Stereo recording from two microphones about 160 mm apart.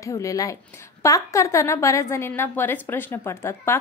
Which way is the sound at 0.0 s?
20° left (ahead or behind).